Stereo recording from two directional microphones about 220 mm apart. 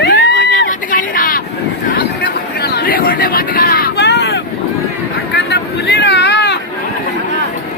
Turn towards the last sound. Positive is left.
turn(degrees=50)  # may be behind; listen again after turning